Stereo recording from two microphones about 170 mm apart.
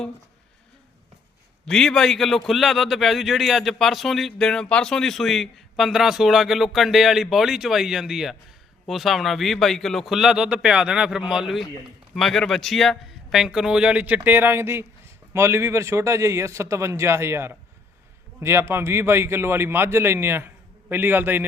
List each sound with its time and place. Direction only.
1.6 s a man's voice: 5° left (ahead or behind)